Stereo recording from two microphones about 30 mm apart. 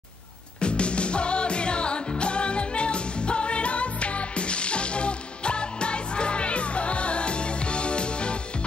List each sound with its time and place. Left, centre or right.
0.6 s music: left